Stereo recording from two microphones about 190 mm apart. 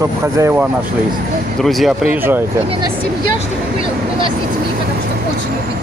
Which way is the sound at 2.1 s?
10° right (ahead or behind).